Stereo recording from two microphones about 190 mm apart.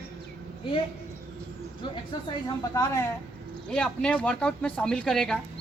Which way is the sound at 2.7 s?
15° left (ahead or behind).